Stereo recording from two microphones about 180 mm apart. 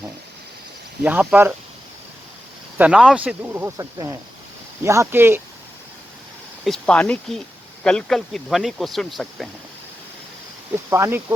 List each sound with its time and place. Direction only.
1.0 s speech: 10° right (ahead or behind)
2.7 s speech: 5° right (ahead or behind)
6.7 s speech: 5° left (ahead or behind)
10.8 s speech: 15° right (ahead or behind)